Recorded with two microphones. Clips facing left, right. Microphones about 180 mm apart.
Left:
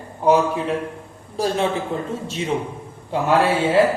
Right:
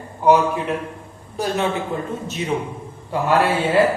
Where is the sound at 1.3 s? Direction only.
35° left (ahead or behind).